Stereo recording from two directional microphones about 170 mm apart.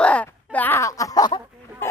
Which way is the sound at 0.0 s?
10° left (ahead or behind).